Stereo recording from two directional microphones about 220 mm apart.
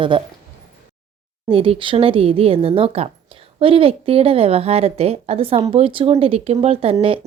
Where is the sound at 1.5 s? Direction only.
25° right (ahead or behind).